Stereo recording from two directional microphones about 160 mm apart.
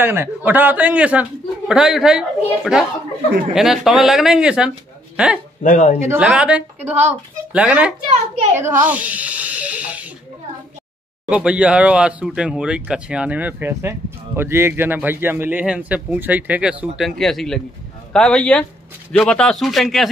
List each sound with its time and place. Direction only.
0.0 s speech: 15° right (ahead or behind)
5.6 s speech: 55° left (ahead or behind)
6.0 s speech: 10° right (ahead or behind)
11.2 s speech: 5° right (ahead or behind)